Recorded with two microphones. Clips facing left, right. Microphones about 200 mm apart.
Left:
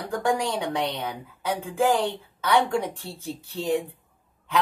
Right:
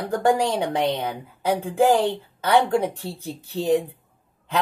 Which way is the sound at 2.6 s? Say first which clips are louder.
Right 5 dB; 40° right (ahead or behind).